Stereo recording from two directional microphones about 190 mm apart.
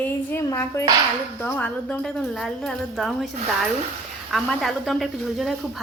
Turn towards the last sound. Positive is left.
turn(degrees=0)  # may be behind; listen again after turning